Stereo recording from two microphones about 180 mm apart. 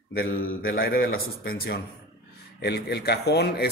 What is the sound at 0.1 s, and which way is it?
Speech, 55° left (ahead or behind).